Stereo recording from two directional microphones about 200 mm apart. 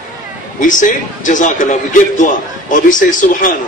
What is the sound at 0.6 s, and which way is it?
A man's voice, 40° left (ahead or behind).